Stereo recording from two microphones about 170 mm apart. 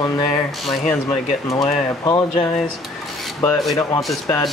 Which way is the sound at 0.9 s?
15° left (ahead or behind).